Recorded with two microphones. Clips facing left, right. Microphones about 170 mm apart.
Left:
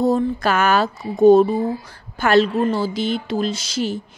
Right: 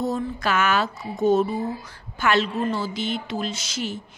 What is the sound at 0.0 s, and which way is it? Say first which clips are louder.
A woman's voice: left 7 dB; 35° left (ahead or behind).